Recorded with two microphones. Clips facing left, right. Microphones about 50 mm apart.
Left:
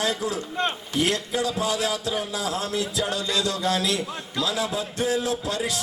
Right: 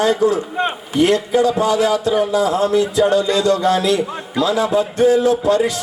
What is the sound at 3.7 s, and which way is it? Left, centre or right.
A man's voice, centre.